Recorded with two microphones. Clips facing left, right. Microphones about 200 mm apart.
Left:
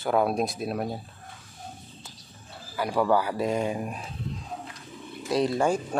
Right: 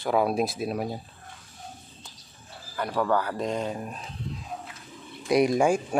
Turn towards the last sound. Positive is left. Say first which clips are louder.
# right 3 dB
turn(degrees=-10)  # may be behind; listen again after turning